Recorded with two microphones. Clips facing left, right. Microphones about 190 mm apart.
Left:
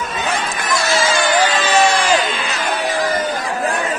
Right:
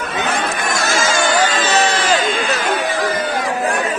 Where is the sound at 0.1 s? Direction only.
60° right (ahead or behind).